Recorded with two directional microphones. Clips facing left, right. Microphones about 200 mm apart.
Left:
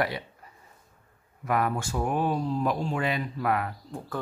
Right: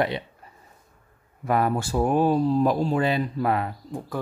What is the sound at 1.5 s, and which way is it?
Speech, 30° right (ahead or behind).